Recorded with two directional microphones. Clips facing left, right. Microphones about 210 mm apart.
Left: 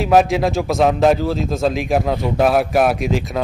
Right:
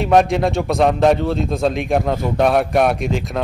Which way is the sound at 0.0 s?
Centre (ahead or behind).